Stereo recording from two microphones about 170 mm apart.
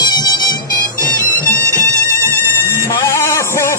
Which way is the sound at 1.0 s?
50° left (ahead or behind).